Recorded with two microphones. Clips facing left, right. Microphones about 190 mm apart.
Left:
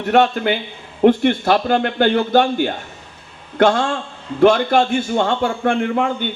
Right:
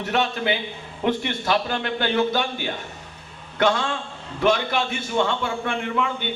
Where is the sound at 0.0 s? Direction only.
50° left (ahead or behind).